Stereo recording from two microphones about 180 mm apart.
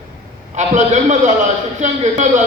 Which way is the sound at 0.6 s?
40° right (ahead or behind).